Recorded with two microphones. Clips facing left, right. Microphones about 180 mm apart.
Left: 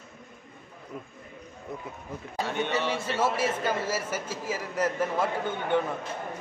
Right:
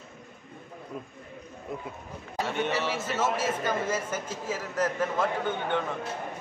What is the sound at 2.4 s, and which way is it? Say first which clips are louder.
Speech: even; centre (ahead or behind).